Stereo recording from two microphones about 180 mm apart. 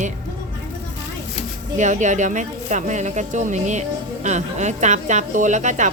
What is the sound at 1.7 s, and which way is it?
Speech, 40° right (ahead or behind).